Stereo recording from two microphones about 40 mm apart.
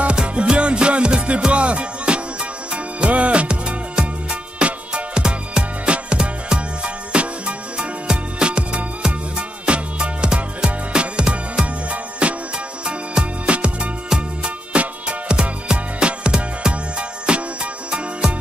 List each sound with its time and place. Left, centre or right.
0.0 s music: right